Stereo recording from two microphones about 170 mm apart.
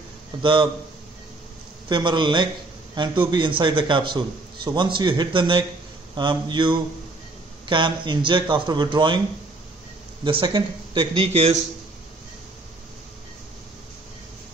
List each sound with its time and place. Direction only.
0.4 s a man's voice: 30° right (ahead or behind)
1.9 s a man's voice: 25° right (ahead or behind)
10.2 s a man's voice: 30° right (ahead or behind)